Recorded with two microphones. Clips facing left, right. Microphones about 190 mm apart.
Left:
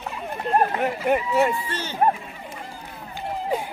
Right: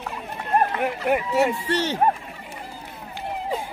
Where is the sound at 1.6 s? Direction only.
80° right.